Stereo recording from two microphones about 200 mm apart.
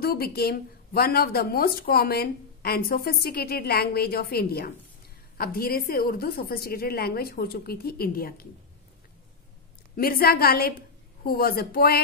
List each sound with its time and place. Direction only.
0.0 s speech: 50° left (ahead or behind)
9.9 s speech: 45° left (ahead or behind)